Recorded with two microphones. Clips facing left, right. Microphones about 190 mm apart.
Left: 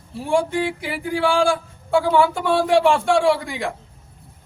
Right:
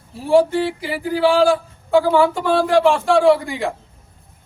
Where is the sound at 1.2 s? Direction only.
35° right (ahead or behind).